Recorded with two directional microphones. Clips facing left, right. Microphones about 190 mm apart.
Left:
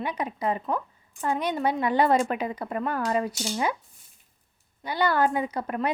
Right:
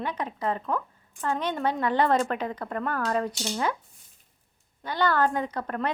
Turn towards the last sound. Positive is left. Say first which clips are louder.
# left 2 dB
turn(degrees=10)  # may be behind; listen again after turning